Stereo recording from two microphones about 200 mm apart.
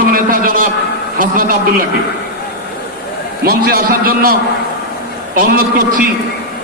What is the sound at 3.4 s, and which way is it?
Speech, 45° right (ahead or behind).